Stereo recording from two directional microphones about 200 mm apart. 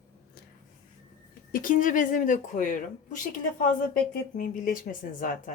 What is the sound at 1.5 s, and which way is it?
Speech, 45° left (ahead or behind).